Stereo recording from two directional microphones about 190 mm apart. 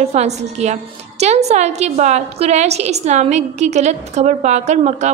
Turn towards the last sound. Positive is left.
turn(degrees=-35)  # may be behind; listen again after turning